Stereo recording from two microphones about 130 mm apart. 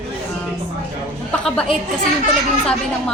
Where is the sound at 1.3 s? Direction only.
5° left (ahead or behind).